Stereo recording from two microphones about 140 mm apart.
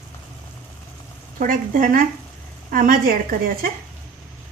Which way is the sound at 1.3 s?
75° right (ahead or behind).